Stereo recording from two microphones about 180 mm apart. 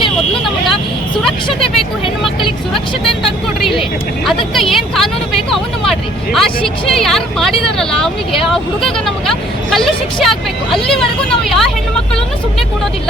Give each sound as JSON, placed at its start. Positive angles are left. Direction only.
{"t": 0.4, "sound": "speech", "side_deg": 0}
{"t": 3.6, "sound": "speech", "side_deg": 0}